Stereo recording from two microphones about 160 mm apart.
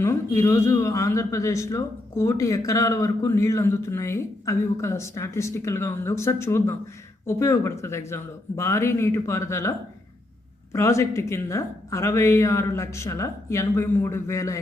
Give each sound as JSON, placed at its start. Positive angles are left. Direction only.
{"t": 0.0, "sound": "a man's voice", "side_deg": 15}